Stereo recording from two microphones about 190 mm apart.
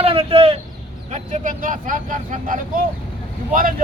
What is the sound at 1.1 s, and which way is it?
Speech, 45° right (ahead or behind).